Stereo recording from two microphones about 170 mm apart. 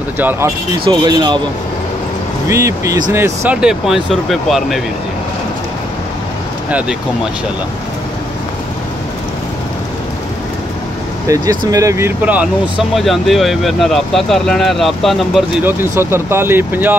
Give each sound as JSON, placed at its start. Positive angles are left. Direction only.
{"t": 0.2, "sound": "speech", "side_deg": -10}
{"t": 0.8, "sound": "speech", "side_deg": -25}
{"t": 2.4, "sound": "speech", "side_deg": -15}
{"t": 11.2, "sound": "speech", "side_deg": -20}
{"t": 15.6, "sound": "speech", "side_deg": -15}